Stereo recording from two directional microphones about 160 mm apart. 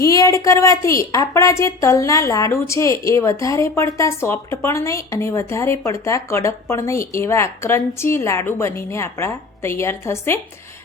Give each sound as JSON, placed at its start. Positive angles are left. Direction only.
{"t": 0.0, "sound": "a woman's voice", "side_deg": 20}